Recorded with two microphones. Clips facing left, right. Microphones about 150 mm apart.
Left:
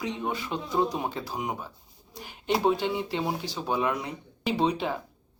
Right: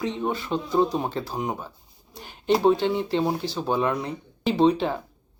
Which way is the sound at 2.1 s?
10° left (ahead or behind).